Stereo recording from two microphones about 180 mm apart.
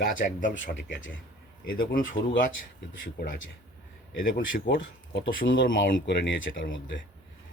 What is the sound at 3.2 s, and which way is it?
Speech, 65° left (ahead or behind).